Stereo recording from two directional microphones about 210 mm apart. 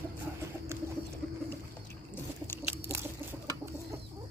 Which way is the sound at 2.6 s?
10° right (ahead or behind).